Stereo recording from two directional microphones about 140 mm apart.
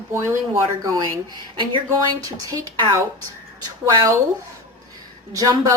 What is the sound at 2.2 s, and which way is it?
Speech, 30° right (ahead or behind).